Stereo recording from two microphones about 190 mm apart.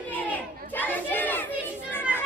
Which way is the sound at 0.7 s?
10° left (ahead or behind).